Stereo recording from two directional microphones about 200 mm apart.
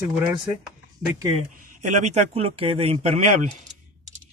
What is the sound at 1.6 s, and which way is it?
Speech, 40° right (ahead or behind).